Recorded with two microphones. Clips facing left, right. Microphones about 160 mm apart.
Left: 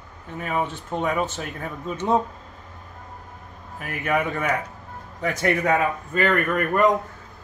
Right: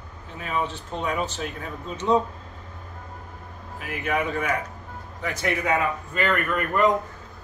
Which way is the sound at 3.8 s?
50° left (ahead or behind).